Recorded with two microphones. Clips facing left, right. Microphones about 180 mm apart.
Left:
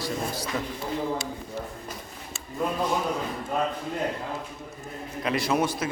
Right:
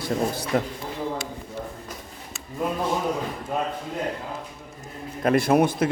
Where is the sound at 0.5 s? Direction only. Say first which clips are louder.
Right 9 dB; 55° right (ahead or behind).